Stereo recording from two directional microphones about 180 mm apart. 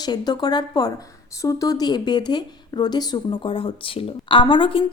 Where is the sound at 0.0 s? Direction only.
25° left (ahead or behind).